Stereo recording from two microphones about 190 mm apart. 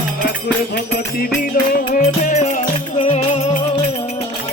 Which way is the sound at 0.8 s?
55° left (ahead or behind).